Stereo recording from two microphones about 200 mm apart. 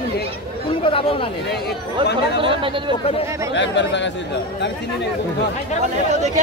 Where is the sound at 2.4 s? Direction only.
25° right (ahead or behind).